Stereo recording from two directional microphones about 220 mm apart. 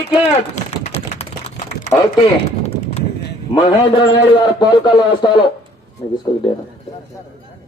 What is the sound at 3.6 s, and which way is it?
A man's voice, 25° left (ahead or behind).